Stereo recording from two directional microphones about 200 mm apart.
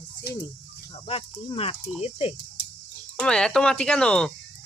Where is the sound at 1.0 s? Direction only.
30° left (ahead or behind).